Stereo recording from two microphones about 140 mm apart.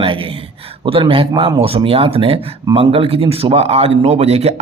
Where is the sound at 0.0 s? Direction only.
40° right (ahead or behind).